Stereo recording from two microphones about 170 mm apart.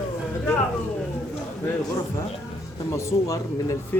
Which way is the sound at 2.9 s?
20° left (ahead or behind).